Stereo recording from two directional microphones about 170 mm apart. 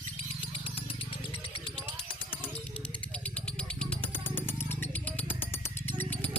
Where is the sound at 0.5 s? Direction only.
30° left (ahead or behind).